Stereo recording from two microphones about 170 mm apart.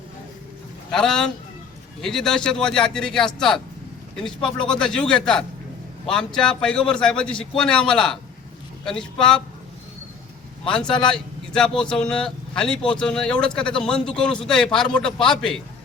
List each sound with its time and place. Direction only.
0.9 s a man's voice: 5° left (ahead or behind)
10.7 s speech: 5° left (ahead or behind)